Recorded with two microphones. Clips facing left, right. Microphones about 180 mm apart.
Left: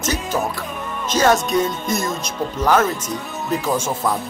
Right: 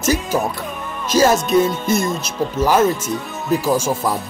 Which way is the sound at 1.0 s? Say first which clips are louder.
Right 2 dB; 10° right (ahead or behind).